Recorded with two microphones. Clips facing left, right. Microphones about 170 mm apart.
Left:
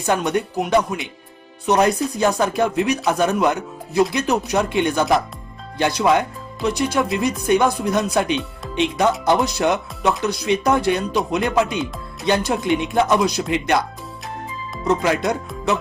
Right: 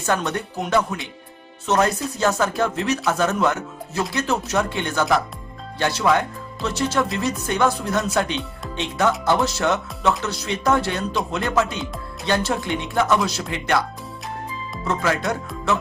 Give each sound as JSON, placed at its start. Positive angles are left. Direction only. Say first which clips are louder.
{"t": 0.0, "sound": "speech", "louder": "left 3 dB", "side_deg": 15}
{"t": 14.8, "sound": "speech", "louder": "left 4 dB", "side_deg": 20}